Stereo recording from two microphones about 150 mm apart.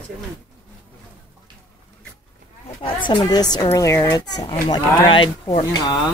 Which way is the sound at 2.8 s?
35° left (ahead or behind).